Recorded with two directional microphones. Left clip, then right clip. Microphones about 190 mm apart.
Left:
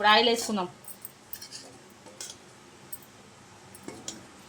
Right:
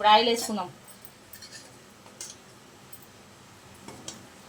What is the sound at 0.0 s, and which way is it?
Speech, 45° left (ahead or behind).